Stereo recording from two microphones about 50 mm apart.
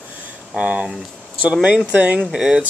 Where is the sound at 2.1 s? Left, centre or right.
Centre.